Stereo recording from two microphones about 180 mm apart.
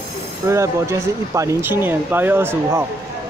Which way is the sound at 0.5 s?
15° right (ahead or behind).